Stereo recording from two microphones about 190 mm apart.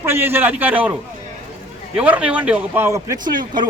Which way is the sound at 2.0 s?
5° right (ahead or behind).